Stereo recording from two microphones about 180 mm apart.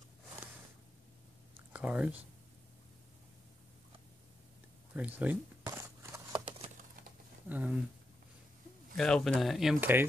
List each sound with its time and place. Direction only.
1.7 s speech: 5° right (ahead or behind)
4.9 s speech: 10° right (ahead or behind)
5.7 s scissors: 15° right (ahead or behind)
7.4 s speech: 10° right (ahead or behind)
8.9 s speech: centre (ahead or behind)